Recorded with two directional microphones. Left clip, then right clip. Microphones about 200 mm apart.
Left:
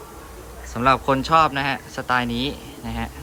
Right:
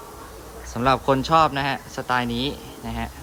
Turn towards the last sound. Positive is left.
turn(degrees=-10)  # may be behind; listen again after turning